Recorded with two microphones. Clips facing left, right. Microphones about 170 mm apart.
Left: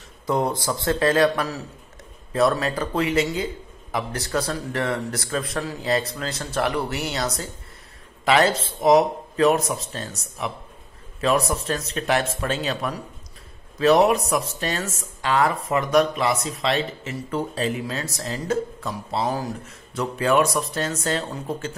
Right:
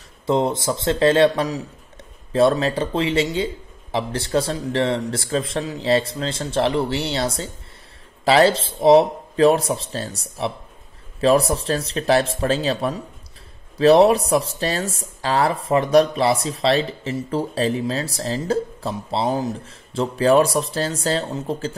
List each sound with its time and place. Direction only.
0.3 s a man's voice: 25° right (ahead or behind)